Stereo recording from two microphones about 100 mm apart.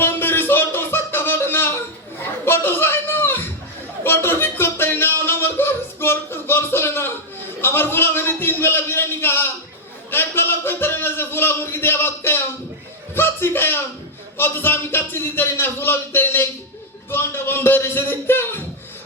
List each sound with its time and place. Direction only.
0.0 s music: 20° left (ahead or behind)
2.4 s chuckle: 20° left (ahead or behind)
4.0 s a sound: 20° left (ahead or behind)
7.6 s a man's voice: 20° left (ahead or behind)